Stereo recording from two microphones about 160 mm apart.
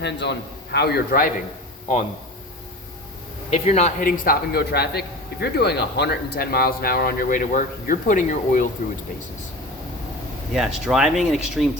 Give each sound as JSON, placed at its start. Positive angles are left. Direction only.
{"t": 0.0, "sound": "a man's voice", "side_deg": 90}
{"t": 3.5, "sound": "speech", "side_deg": 45}
{"t": 4.0, "sound": "speech", "side_deg": 65}
{"t": 10.5, "sound": "speech", "side_deg": -5}